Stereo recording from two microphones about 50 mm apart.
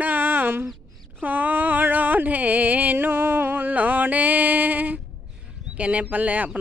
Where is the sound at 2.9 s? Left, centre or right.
Right.